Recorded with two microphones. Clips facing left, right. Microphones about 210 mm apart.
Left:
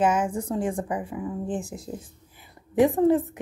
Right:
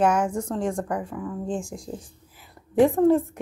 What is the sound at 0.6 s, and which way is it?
Speech, 5° left (ahead or behind).